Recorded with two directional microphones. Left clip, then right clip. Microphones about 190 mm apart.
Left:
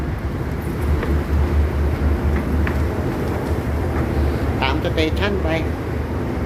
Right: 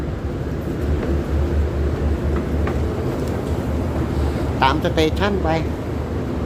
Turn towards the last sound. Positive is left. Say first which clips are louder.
# right 1 dB
turn(degrees=-20)  # may be behind; listen again after turning